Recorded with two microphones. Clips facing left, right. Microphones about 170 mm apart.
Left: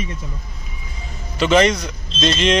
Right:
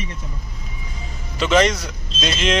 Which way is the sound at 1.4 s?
Centre (ahead or behind).